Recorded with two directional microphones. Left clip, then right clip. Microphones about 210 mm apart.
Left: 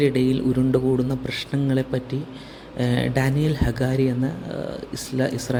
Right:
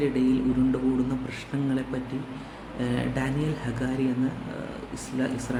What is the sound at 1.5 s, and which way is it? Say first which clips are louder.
Speech: left 3 dB; 30° left (ahead or behind).